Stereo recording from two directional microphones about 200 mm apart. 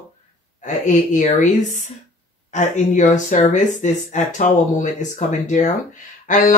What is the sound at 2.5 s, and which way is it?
Speech, 40° left (ahead or behind).